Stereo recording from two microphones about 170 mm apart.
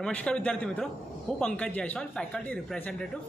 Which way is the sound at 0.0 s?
5° left (ahead or behind).